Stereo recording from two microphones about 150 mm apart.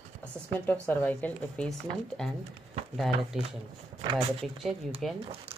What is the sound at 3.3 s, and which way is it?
A woman's voice, 5° right (ahead or behind).